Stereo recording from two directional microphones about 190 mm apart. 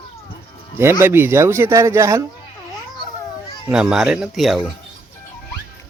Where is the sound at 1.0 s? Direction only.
15° right (ahead or behind).